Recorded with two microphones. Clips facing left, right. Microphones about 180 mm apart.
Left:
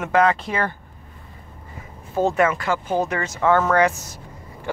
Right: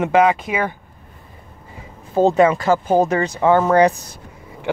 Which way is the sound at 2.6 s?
40° right (ahead or behind).